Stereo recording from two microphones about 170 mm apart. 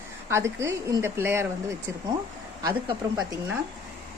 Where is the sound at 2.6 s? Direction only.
25° right (ahead or behind).